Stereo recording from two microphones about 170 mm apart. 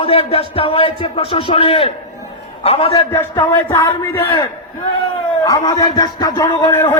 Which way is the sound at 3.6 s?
15° left (ahead or behind).